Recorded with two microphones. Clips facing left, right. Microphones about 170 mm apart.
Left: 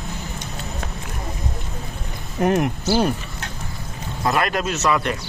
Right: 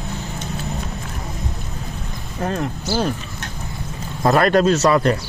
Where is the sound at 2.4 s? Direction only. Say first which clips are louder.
Left 5 dB; 20° left (ahead or behind).